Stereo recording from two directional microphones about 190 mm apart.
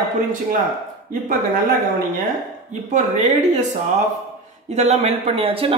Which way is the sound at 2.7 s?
35° right (ahead or behind).